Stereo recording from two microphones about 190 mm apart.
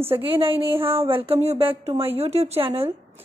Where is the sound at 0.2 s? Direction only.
30° right (ahead or behind).